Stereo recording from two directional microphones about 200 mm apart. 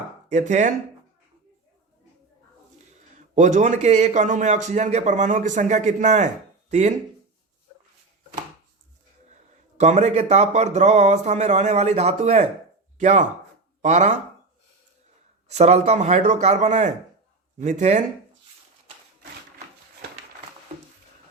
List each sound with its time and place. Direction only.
0.3 s a man's voice: 35° right (ahead or behind)
3.3 s a man's voice: 40° right (ahead or behind)
9.7 s a man's voice: 35° right (ahead or behind)
15.4 s a man's voice: 35° right (ahead or behind)